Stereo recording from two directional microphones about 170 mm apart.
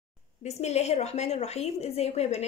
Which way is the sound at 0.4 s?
40° left (ahead or behind).